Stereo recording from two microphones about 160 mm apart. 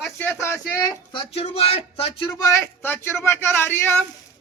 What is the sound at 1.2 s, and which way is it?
Speech, 40° left (ahead or behind).